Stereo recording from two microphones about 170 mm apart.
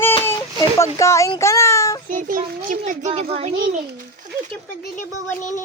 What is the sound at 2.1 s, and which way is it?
Speech, 55° right (ahead or behind).